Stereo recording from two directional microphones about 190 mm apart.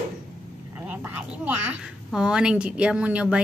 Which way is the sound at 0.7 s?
10° right (ahead or behind).